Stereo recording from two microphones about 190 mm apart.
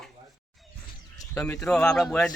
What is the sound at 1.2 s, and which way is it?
Speech, 10° left (ahead or behind).